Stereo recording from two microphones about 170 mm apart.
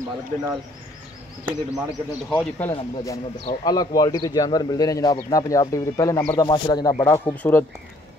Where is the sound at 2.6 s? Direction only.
15° left (ahead or behind).